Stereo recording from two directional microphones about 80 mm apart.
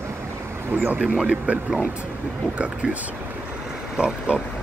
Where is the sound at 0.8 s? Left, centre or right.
Centre.